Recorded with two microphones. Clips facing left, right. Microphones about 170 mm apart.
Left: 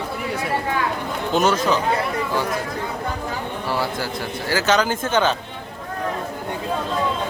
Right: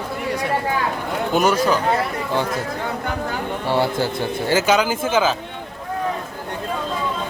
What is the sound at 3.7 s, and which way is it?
Speech, 25° right (ahead or behind).